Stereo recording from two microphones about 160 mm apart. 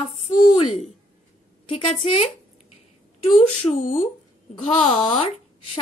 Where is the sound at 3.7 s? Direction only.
40° left (ahead or behind).